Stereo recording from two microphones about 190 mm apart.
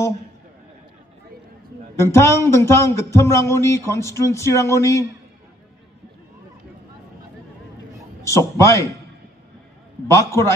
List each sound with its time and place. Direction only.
2.0 s speech: 15° left (ahead or behind)
8.4 s speech: 15° left (ahead or behind)
10.1 s speech: 15° left (ahead or behind)